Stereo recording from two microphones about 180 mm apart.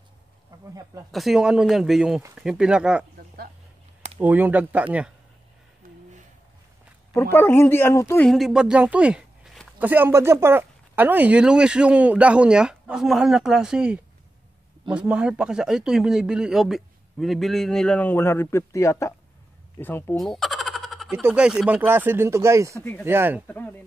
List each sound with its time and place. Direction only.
1.1 s speech: centre (ahead or behind)
4.2 s speech: 10° right (ahead or behind)
5.8 s a sound: 50° right (ahead or behind)
7.2 s speech: 10° left (ahead or behind)
8.3 s speech: centre (ahead or behind)
20.2 s boing: centre (ahead or behind)
21.1 s speech: 10° right (ahead or behind)
22.8 s speech: 10° left (ahead or behind)
23.0 s speech: 10° right (ahead or behind)
23.4 s speech: 10° left (ahead or behind)